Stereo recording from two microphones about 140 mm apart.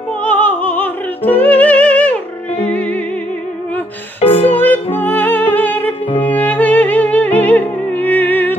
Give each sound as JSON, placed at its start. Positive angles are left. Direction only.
{"t": 0.2, "sound": "music", "side_deg": 10}
{"t": 4.2, "sound": "music", "side_deg": 45}
{"t": 4.6, "sound": "music", "side_deg": 15}